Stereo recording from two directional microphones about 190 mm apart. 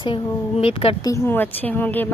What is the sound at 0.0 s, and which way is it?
A woman's voice, 30° left (ahead or behind).